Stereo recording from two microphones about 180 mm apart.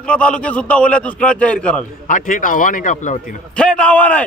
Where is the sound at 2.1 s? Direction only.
45° left (ahead or behind).